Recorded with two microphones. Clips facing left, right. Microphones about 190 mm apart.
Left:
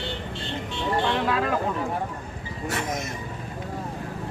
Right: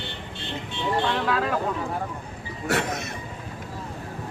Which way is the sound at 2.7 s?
70° right (ahead or behind).